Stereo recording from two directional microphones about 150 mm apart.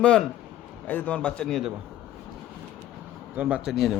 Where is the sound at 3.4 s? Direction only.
10° right (ahead or behind).